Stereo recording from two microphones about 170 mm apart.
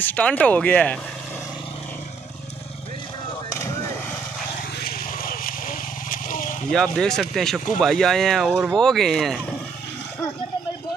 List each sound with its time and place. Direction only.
0.0 s speech: 10° left (ahead or behind)
3.4 s vehicle: 20° left (ahead or behind)
4.7 s vehicle: 65° left (ahead or behind)
6.7 s speech: centre (ahead or behind)